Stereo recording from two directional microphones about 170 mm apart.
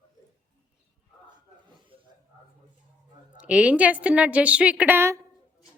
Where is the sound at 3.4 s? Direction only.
5° right (ahead or behind).